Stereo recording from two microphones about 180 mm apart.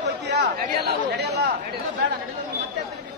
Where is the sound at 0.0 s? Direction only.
65° right (ahead or behind).